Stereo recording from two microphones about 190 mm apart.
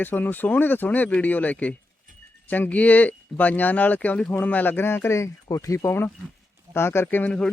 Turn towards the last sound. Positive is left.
turn(degrees=5)  # may be behind; listen again after turning